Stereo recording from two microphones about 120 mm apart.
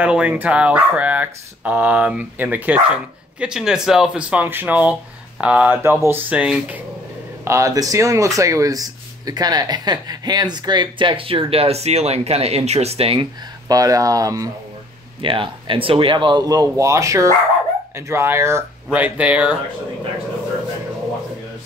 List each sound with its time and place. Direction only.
0.0 s speech: 10° right (ahead or behind)
7.4 s speech: 25° right (ahead or behind); by 13.3 s 50° right (ahead or behind)
13.7 s speech: 30° right (ahead or behind)
15.2 s speech: 45° right (ahead or behind); by 18.6 s 20° right (ahead or behind)
18.9 s speech: 10° right (ahead or behind)